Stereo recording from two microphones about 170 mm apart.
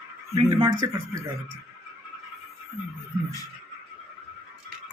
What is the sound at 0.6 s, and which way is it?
Speech, 25° right (ahead or behind).